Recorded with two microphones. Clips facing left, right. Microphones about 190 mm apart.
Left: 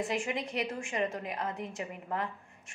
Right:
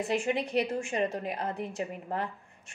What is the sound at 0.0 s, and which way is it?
A woman's voice, 35° right (ahead or behind).